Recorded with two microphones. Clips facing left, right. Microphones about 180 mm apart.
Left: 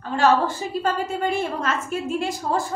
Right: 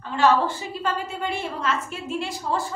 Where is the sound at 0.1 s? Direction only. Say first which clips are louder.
Left 1 dB; 40° left (ahead or behind).